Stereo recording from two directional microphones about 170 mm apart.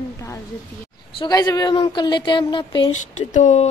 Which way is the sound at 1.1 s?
25° left (ahead or behind).